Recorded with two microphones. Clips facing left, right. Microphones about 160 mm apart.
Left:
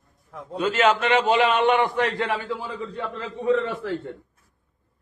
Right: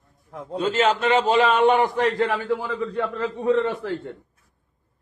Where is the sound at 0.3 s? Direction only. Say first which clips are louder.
Right 1 dB; 35° right (ahead or behind); by 3.0 s 60° right (ahead or behind).